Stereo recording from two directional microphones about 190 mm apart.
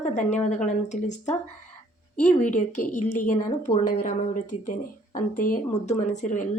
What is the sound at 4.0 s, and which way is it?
A woman's voice, 45° left (ahead or behind).